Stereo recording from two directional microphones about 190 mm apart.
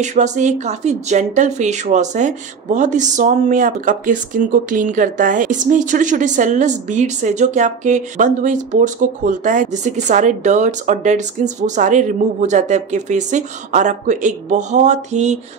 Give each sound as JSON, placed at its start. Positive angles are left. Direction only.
{"t": 0.0, "sound": "speech", "side_deg": -40}